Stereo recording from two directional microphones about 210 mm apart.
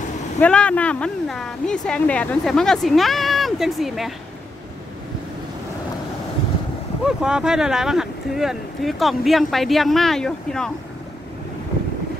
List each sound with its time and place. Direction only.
0.4 s a woman's voice: 5° left (ahead or behind)
7.1 s a woman's voice: 5° right (ahead or behind)